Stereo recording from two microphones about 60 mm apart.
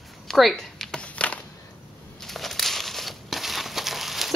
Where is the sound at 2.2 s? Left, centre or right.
Centre.